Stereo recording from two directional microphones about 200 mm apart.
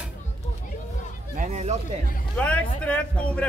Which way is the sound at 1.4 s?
35° right (ahead or behind).